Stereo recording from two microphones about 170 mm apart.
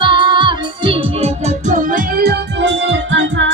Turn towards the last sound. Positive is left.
turn(degrees=-90)